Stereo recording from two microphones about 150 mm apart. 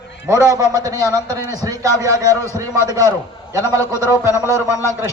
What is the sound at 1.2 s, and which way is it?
Speech, 15° left (ahead or behind).